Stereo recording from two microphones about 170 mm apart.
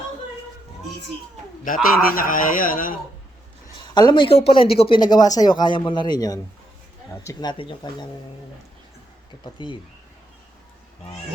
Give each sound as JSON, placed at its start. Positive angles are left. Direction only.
{"t": 1.6, "sound": "a man's voice", "side_deg": 55}
{"t": 3.9, "sound": "a man's voice", "side_deg": 25}
{"t": 9.4, "sound": "a man's voice", "side_deg": 25}